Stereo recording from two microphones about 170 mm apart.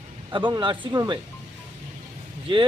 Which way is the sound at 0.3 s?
25° right (ahead or behind).